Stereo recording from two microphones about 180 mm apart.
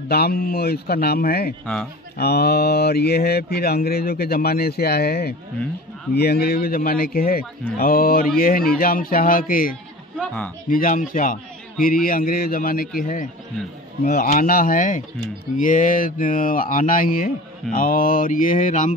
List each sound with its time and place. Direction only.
0.1 s speech: 55° left (ahead or behind)
10.1 s speech: 10° left (ahead or behind)
10.7 s speech: 50° left (ahead or behind)